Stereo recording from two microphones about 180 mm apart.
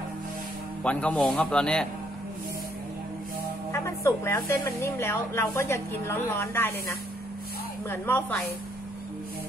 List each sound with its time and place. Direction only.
0.8 s speech: 5° left (ahead or behind)
3.7 s speech: 15° left (ahead or behind)